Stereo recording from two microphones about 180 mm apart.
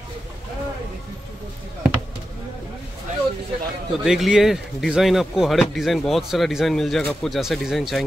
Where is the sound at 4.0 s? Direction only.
5° right (ahead or behind).